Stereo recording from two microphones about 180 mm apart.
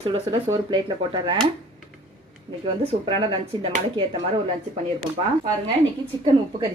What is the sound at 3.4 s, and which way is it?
Speech, 30° right (ahead or behind).